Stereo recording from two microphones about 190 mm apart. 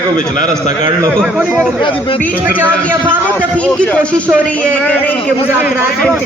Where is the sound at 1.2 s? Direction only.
5° right (ahead or behind).